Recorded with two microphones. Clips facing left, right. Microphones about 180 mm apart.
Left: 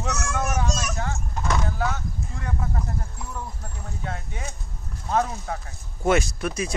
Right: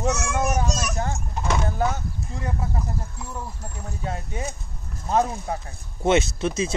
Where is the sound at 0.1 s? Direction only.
20° right (ahead or behind).